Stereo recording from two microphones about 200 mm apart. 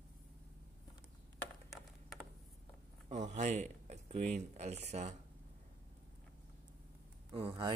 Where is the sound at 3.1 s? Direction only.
35° right (ahead or behind).